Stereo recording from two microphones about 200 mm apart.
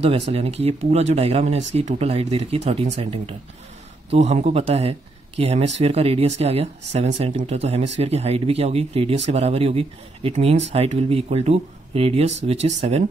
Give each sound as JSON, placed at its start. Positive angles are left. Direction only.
{"t": 0.3, "sound": "speech", "side_deg": -30}